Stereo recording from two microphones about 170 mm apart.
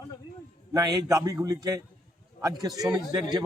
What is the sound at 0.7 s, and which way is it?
A man's voice, 20° right (ahead or behind).